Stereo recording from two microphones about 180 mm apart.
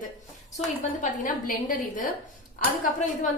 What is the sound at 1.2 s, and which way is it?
A woman's voice, 45° left (ahead or behind).